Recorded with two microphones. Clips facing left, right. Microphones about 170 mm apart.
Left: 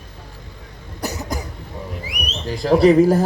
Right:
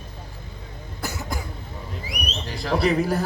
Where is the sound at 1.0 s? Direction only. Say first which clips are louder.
Left 5 dB; 40° left (ahead or behind).